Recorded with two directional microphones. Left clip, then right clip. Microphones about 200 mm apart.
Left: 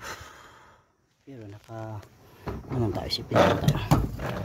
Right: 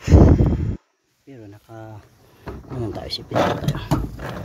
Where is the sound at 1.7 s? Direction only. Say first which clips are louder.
Left 2 dB; 15° left (ahead or behind).